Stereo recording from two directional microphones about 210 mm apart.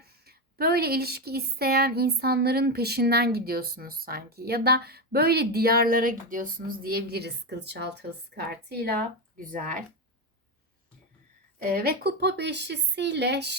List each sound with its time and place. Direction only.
0.0 s speech: 50° right (ahead or behind)
11.6 s speech: 45° right (ahead or behind)